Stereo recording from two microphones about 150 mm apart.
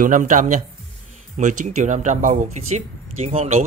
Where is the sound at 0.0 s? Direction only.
60° right (ahead or behind).